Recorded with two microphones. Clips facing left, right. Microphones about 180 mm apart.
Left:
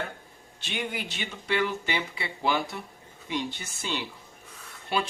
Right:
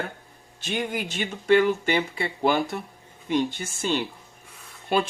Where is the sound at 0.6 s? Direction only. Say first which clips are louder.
Right 5 dB; 45° right (ahead or behind).